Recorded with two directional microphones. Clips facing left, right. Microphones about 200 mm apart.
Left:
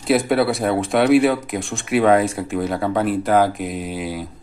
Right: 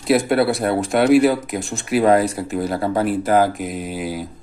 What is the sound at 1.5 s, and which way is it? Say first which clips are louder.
Speech: even; centre (ahead or behind).